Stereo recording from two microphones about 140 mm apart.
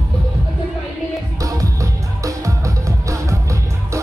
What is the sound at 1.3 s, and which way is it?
Music, 25° right (ahead or behind).